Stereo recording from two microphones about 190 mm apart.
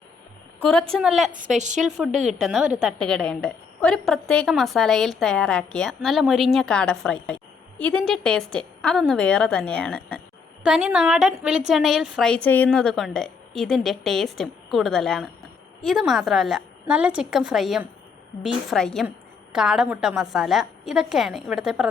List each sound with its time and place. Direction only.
0.6 s a woman's voice: 5° left (ahead or behind)
1.3 s a woman's voice: 40° right (ahead or behind)
1.8 s a woman's voice: centre (ahead or behind)
10.6 s a woman's voice: 5° right (ahead or behind)